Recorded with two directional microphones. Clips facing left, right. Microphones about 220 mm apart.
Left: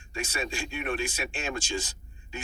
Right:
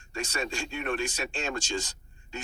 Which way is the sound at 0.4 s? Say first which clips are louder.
Even; 15° left (ahead or behind).